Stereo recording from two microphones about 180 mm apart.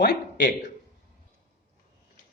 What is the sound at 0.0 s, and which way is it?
Speech, 60° left (ahead or behind).